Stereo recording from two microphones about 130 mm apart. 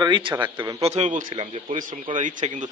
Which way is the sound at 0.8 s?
55° right (ahead or behind).